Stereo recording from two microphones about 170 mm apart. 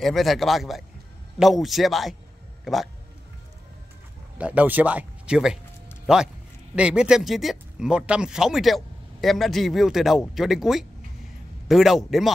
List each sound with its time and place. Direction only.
0.0 s a man's voice: centre (ahead or behind)
4.4 s a man's voice: 10° right (ahead or behind)